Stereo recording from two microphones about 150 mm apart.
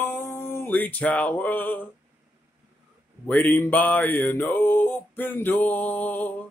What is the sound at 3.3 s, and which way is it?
Speech, 10° left (ahead or behind).